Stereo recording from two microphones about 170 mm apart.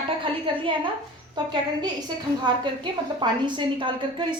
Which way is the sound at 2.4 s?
25° right (ahead or behind).